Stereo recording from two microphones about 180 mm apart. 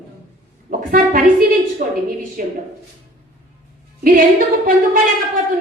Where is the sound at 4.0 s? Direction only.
50° right (ahead or behind).